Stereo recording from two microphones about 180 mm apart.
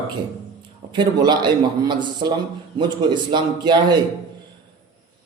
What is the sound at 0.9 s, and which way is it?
Speech, 25° right (ahead or behind).